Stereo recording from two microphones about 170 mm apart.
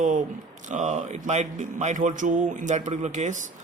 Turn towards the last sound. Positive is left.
turn(degrees=-45)  # may be behind; listen again after turning